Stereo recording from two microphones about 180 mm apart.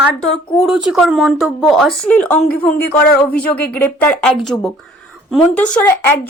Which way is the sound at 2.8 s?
60° left (ahead or behind).